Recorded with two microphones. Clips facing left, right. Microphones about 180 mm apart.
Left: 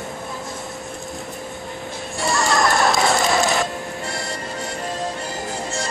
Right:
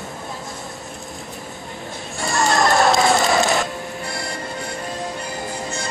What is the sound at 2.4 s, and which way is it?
Music, centre (ahead or behind).